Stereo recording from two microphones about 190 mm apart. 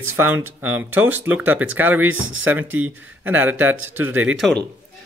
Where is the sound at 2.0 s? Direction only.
90° right.